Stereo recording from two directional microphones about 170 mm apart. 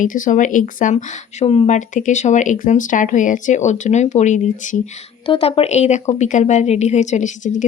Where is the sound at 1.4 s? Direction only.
35° left (ahead or behind).